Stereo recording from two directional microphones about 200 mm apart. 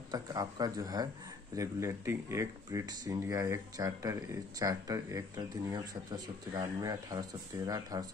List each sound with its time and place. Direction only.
0.1 s a man's voice: 20° right (ahead or behind)